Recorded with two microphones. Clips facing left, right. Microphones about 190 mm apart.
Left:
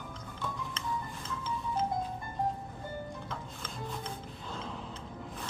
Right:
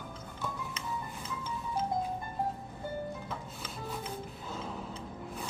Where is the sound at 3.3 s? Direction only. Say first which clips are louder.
Even; 5° right (ahead or behind).